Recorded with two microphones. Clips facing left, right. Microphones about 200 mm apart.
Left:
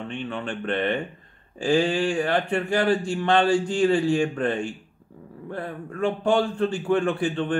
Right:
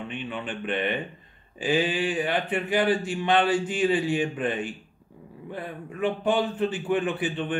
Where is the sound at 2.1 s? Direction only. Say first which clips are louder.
Left 3 dB; 20° right (ahead or behind).